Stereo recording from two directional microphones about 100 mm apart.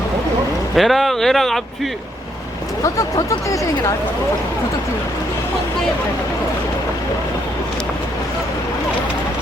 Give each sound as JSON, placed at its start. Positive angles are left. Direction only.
{"t": 0.8, "sound": "speech", "side_deg": 0}
{"t": 2.8, "sound": "speech", "side_deg": 35}